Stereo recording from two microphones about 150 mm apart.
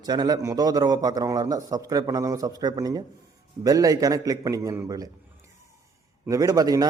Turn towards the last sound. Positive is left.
turn(degrees=-25)  # may be behind; listen again after turning